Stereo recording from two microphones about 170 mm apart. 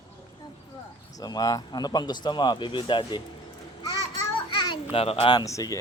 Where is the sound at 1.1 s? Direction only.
20° left (ahead or behind).